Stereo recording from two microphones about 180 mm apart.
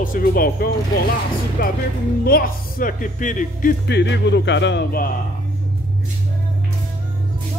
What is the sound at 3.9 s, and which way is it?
Speech, 75° left (ahead or behind).